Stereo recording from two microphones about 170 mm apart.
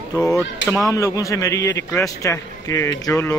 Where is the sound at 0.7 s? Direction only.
20° left (ahead or behind).